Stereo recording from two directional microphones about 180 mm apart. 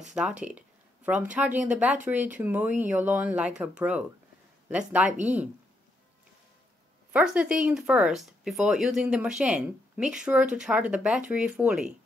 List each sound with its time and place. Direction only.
0.1 s speech: 5° right (ahead or behind)
5.1 s speech: 40° right (ahead or behind)
7.1 s speech: 5° right (ahead or behind)